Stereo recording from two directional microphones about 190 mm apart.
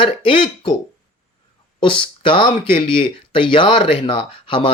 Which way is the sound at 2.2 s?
25° left (ahead or behind).